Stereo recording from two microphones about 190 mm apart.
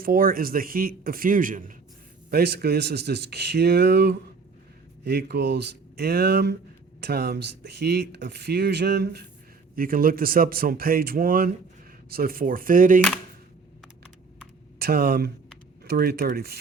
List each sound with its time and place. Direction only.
0.0 s speech: 50° right (ahead or behind)
2.3 s speech: 55° right (ahead or behind)
9.7 s speech: 50° right (ahead or behind)
14.8 s speech: 55° right (ahead or behind)